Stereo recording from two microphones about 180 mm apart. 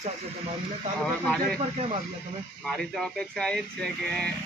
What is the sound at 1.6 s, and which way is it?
Speech, 35° right (ahead or behind).